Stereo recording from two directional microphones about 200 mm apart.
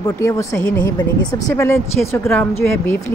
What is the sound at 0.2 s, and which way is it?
Speech, 15° left (ahead or behind).